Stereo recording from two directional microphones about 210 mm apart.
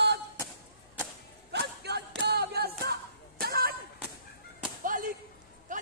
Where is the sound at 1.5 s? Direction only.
50° right (ahead or behind).